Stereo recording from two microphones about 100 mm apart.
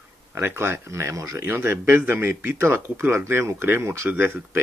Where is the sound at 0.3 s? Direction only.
20° right (ahead or behind).